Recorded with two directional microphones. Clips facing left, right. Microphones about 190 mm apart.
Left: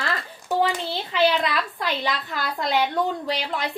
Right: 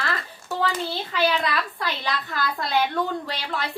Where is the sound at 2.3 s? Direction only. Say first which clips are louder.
Right 1 dB; 20° left (ahead or behind).